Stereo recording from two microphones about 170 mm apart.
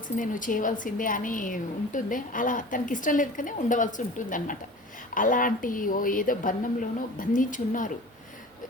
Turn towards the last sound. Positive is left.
turn(degrees=50)  # may be behind; listen again after turning